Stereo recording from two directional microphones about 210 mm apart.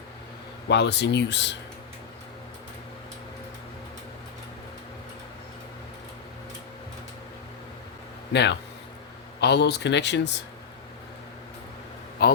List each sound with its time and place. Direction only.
0.7 s speech: 55° left (ahead or behind)
8.3 s speech: 55° left (ahead or behind)
12.2 s a man's voice: 50° left (ahead or behind)